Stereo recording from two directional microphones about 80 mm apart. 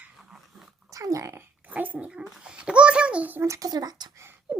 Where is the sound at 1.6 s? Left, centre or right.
Right.